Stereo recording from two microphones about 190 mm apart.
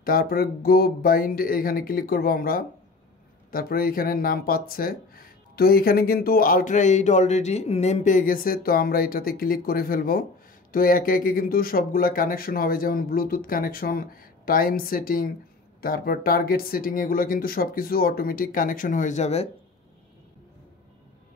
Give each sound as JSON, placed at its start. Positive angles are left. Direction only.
{"t": 0.0, "sound": "speech", "side_deg": 50}